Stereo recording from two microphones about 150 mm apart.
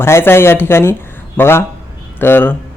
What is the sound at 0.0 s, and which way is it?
Speech, 15° left (ahead or behind).